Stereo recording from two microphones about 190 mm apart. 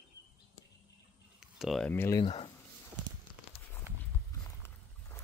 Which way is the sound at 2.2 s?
25° left (ahead or behind).